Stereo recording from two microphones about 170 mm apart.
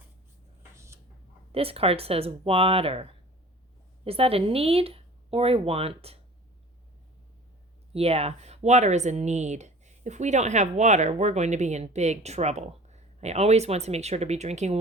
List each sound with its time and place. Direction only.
1.5 s speech: 35° right (ahead or behind)
7.9 s speech: 35° right (ahead or behind)